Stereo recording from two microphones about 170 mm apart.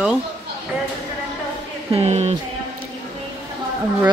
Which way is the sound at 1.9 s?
40° right (ahead or behind).